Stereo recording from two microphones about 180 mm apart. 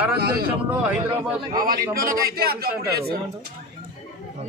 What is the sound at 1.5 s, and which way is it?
A man's voice, 50° right (ahead or behind).